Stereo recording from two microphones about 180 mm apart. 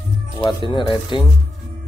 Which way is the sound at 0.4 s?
25° left (ahead or behind).